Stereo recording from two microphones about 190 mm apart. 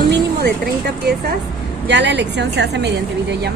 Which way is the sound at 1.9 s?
65° right (ahead or behind).